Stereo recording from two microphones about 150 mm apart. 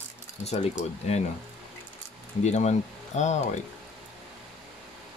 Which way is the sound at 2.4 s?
50° left (ahead or behind).